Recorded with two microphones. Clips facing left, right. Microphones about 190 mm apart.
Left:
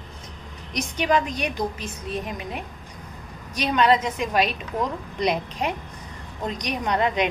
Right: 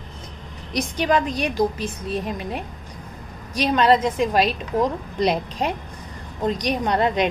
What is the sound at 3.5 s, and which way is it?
A woman's voice, 35° right (ahead or behind).